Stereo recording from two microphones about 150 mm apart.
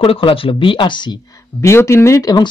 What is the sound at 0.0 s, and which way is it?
Speech, 40° left (ahead or behind).